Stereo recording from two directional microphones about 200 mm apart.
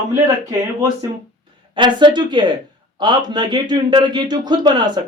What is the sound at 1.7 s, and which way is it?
Speech, 25° right (ahead or behind).